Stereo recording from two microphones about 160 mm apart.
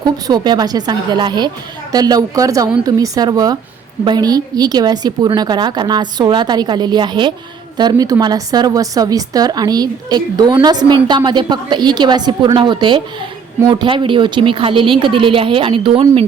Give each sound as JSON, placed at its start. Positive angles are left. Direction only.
{"t": 0.0, "sound": "a woman's voice", "side_deg": -25}